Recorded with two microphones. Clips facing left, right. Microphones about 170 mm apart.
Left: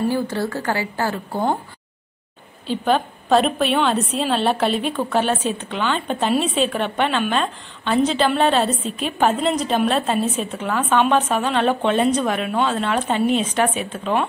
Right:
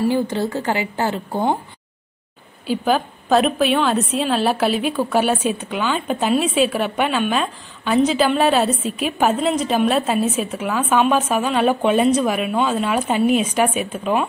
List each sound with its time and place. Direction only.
0.1 s a woman's voice: 20° right (ahead or behind)
2.6 s a woman's voice: 5° right (ahead or behind)